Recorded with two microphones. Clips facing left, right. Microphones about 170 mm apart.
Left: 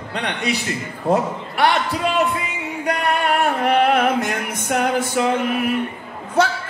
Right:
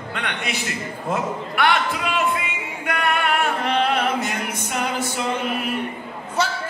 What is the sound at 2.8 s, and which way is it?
Music, 35° left (ahead or behind).